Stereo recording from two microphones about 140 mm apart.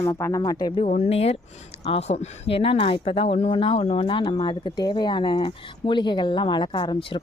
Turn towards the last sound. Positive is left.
turn(degrees=35)  # may be behind; listen again after turning